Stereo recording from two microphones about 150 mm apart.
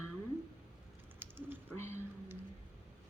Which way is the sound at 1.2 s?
15° right (ahead or behind).